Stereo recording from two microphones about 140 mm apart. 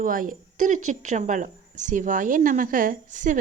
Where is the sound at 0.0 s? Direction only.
75° right (ahead or behind).